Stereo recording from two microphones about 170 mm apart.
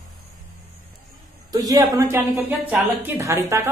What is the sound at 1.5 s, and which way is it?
Speech, 20° right (ahead or behind).